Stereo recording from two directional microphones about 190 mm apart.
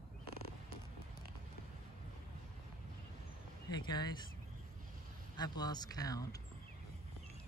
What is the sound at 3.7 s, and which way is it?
Speech, 20° left (ahead or behind).